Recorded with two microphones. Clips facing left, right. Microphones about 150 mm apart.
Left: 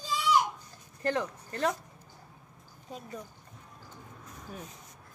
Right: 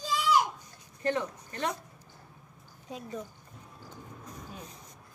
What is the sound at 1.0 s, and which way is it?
Speech, 35° left (ahead or behind).